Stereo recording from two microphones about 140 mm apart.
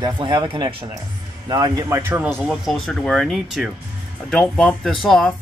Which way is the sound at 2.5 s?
Centre (ahead or behind).